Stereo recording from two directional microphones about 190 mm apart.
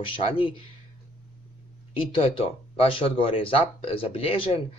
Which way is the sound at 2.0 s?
30° left (ahead or behind).